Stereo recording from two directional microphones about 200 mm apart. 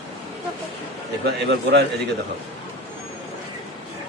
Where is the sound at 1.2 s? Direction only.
55° right (ahead or behind).